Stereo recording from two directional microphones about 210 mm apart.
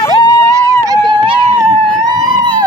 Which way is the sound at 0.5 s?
15° right (ahead or behind).